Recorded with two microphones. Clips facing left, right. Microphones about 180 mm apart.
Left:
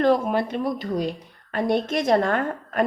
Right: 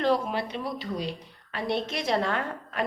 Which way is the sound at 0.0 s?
50° left (ahead or behind).